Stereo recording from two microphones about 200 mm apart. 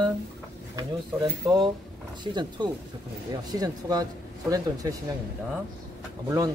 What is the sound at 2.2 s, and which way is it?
Speech, 20° right (ahead or behind).